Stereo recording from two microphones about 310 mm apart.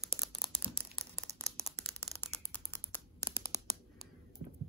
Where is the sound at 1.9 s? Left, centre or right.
Centre.